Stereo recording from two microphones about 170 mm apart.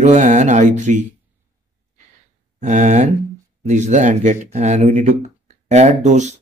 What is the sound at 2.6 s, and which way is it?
Speech, 45° right (ahead or behind).